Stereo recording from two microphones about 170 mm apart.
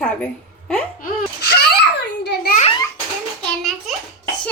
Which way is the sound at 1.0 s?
75° left (ahead or behind).